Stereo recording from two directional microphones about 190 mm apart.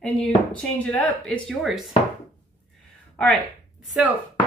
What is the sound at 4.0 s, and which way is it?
Speech, 5° right (ahead or behind).